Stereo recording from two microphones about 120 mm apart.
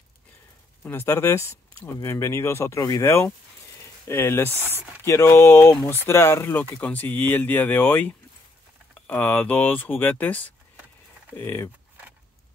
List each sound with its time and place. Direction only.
0.8 s speech: 20° left (ahead or behind)